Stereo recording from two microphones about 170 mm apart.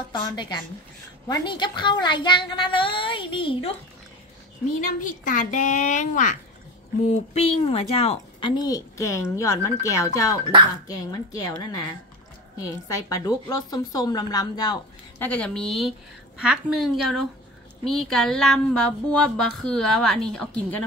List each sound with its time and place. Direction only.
0.1 s a woman's voice: 25° left (ahead or behind)
4.8 s a woman's voice: 50° left (ahead or behind)
7.3 s a woman's voice: 35° left (ahead or behind)
15.2 s speech: 5° left (ahead or behind)